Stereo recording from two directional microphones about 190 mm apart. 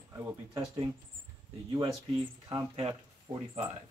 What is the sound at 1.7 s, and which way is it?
Speech, 20° right (ahead or behind).